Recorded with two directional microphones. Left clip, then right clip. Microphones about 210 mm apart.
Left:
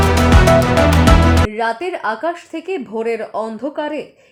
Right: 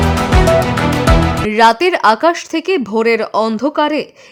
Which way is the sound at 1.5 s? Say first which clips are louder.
Right 10 dB; 45° right (ahead or behind).